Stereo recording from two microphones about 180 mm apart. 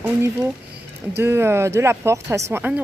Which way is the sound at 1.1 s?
15° right (ahead or behind).